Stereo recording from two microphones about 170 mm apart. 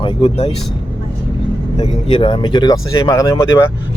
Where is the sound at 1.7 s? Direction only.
40° left (ahead or behind).